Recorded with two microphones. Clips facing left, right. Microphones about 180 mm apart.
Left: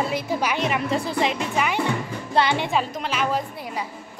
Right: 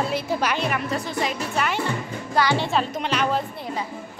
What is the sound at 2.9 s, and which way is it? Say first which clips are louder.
Speech: right 1 dB; 5° left (ahead or behind).